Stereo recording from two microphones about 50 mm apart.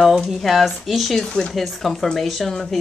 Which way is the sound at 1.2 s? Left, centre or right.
Centre.